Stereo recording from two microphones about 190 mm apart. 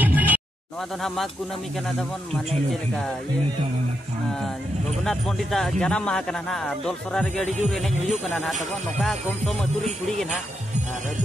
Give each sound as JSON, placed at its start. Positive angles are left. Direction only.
{"t": 0.0, "sound": "music", "side_deg": -10}
{"t": 1.0, "sound": "speech", "side_deg": 0}
{"t": 5.0, "sound": "speech", "side_deg": 0}